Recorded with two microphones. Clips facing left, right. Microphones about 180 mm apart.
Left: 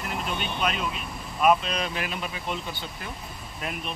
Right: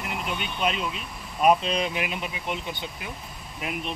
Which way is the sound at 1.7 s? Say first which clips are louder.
Right 3 dB; 15° right (ahead or behind).